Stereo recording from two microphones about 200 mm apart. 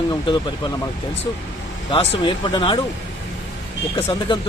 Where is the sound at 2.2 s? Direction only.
25° left (ahead or behind).